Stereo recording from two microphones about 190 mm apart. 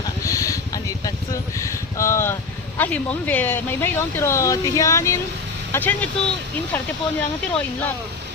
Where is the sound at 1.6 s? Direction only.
15° left (ahead or behind).